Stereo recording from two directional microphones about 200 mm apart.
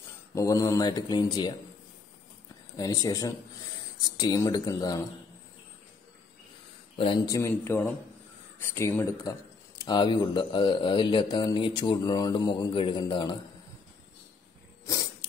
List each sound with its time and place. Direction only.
0.3 s speech: 15° left (ahead or behind)
2.8 s speech: 20° left (ahead or behind)
7.0 s speech: 20° left (ahead or behind)